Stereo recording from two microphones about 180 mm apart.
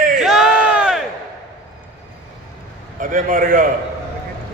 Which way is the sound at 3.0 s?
50° right (ahead or behind).